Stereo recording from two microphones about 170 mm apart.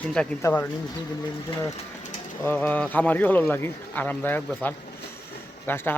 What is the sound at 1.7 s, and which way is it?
Sewing machine, 45° left (ahead or behind).